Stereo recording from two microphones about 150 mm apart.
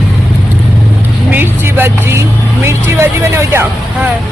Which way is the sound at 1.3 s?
15° right (ahead or behind).